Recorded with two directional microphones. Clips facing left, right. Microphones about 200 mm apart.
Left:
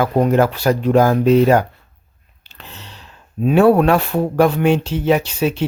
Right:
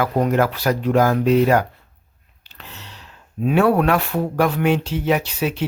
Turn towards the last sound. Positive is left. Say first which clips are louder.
# left 4 dB
turn(degrees=25)  # may be behind; listen again after turning